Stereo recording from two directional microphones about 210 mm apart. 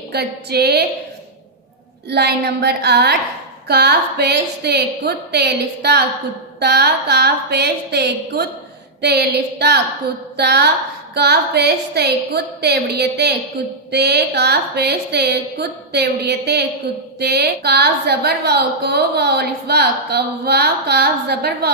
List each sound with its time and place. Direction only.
0.1 s a woman's voice: 50° right (ahead or behind)
2.0 s a woman's voice: 50° right (ahead or behind)